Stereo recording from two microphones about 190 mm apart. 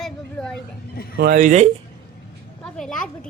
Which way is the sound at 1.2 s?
50° right (ahead or behind).